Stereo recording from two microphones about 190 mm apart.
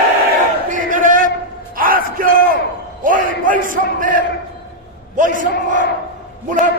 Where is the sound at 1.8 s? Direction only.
50° right (ahead or behind).